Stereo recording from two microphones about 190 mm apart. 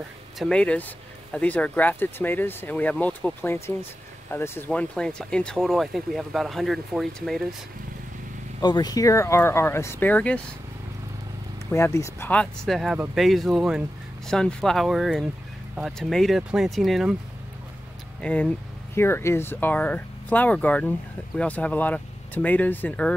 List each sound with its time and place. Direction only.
0.4 s speech: 5° left (ahead or behind)
8.5 s speech: 20° left (ahead or behind)
11.7 s speech: 15° left (ahead or behind); by 17.2 s centre (ahead or behind)
18.2 s speech: 10° left (ahead or behind)